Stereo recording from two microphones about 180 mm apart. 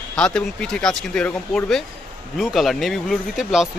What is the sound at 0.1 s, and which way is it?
Speech, 5° left (ahead or behind).